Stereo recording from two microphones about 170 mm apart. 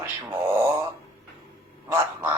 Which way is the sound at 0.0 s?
15° right (ahead or behind).